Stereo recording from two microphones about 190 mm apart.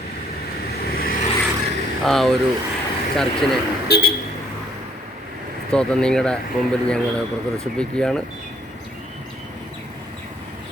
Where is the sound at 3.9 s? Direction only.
60° left (ahead or behind).